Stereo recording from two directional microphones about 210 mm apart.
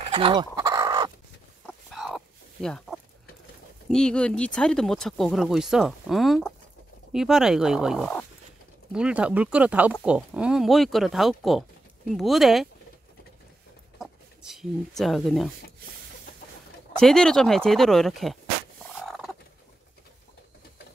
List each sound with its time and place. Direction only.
0.0 s speech: 25° right (ahead or behind)
0.6 s fowl: 20° right (ahead or behind)
1.7 s chicken: centre (ahead or behind)
3.9 s speech: 5° left (ahead or behind)
14.5 s speech: centre (ahead or behind)
17.0 s speech: 5° left (ahead or behind)
18.9 s turkey: centre (ahead or behind)